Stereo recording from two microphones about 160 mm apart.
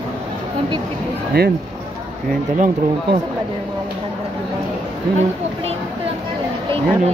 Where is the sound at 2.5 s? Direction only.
50° right (ahead or behind).